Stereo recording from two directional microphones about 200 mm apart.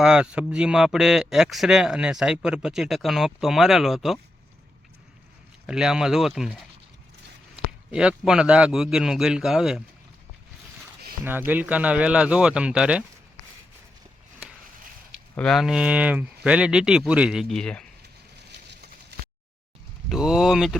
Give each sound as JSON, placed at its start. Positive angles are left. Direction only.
{"t": 0.0, "sound": "speech", "side_deg": -5}
{"t": 5.6, "sound": "speech", "side_deg": -5}
{"t": 11.3, "sound": "speech", "side_deg": -10}
{"t": 15.4, "sound": "speech", "side_deg": 0}
{"t": 19.1, "sound": "a sound", "side_deg": -55}
{"t": 20.1, "sound": "speech", "side_deg": -5}